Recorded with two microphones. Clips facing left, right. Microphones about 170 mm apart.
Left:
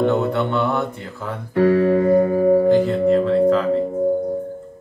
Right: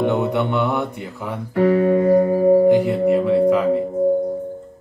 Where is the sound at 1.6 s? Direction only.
25° right (ahead or behind).